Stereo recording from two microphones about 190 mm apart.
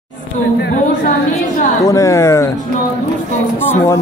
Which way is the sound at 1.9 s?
15° left (ahead or behind).